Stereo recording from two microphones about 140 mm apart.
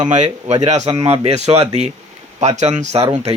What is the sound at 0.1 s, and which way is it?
Speech, 55° right (ahead or behind).